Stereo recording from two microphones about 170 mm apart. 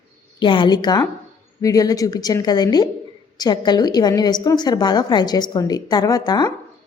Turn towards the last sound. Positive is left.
turn(degrees=25)  # may be behind; listen again after turning